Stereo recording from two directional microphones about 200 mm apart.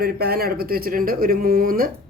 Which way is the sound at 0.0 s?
50° right (ahead or behind).